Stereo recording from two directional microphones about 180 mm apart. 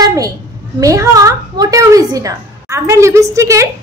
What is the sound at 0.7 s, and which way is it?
A woman's voice, 20° right (ahead or behind).